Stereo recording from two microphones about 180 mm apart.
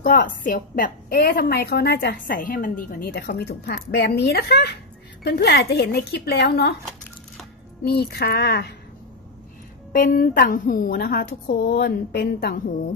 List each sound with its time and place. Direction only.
0.0 s a woman's voice: 50° left (ahead or behind)
7.8 s a woman's voice: 60° left (ahead or behind)
9.9 s a woman's voice: 50° left (ahead or behind)